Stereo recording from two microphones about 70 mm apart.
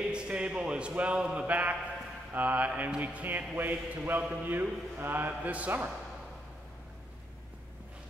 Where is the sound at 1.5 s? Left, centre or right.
Right.